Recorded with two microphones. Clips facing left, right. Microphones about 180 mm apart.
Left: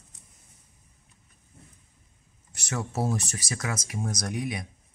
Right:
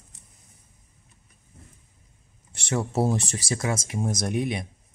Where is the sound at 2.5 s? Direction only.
30° right (ahead or behind).